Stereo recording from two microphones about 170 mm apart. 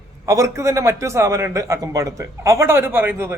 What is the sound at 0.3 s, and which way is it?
A man's voice, 20° right (ahead or behind).